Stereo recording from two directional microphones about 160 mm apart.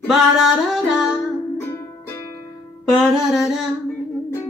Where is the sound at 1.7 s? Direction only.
15° left (ahead or behind).